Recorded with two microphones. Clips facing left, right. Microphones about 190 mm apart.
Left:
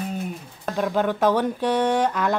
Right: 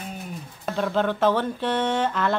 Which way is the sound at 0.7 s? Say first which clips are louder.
Left 1 dB; 15° left (ahead or behind).